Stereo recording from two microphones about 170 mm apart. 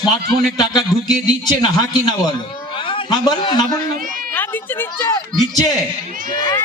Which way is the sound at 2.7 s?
30° left (ahead or behind).